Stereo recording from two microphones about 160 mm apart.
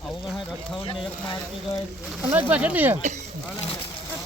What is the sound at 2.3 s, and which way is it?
Speech, 10° right (ahead or behind).